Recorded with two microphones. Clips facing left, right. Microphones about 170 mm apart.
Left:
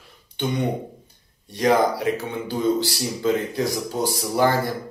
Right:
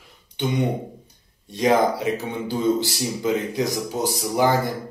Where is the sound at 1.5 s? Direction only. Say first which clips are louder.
Even; 15° right (ahead or behind).